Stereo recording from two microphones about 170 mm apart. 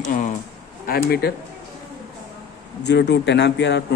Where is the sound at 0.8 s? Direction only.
60° left (ahead or behind).